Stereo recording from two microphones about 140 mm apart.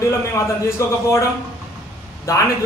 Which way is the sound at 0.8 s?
20° left (ahead or behind).